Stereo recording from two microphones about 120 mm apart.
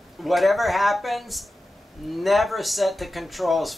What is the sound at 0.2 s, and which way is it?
Speech, centre (ahead or behind).